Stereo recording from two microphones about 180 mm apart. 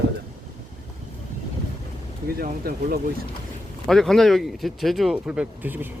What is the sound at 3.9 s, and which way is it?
Speech, centre (ahead or behind).